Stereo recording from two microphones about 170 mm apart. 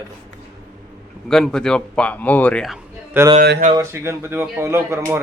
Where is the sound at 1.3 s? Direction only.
5° left (ahead or behind).